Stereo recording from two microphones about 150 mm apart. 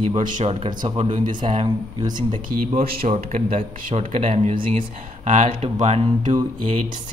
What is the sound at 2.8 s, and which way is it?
Speech, 80° right.